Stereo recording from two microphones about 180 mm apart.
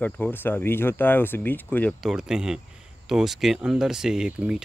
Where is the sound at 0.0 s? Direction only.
10° left (ahead or behind).